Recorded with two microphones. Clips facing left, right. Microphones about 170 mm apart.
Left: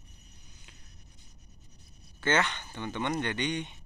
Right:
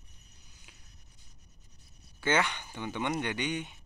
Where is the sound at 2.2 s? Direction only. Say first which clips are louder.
Left 1 dB; 10° right (ahead or behind).